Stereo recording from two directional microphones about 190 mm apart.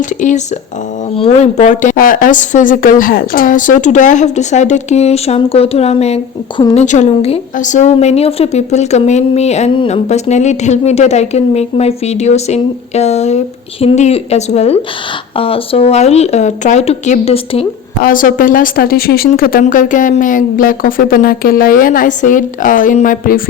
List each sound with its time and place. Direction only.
0.0 s speech: 40° left (ahead or behind)
18.0 s speech: 45° left (ahead or behind)